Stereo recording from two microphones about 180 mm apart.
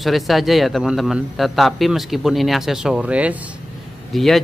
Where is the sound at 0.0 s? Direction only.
Centre (ahead or behind).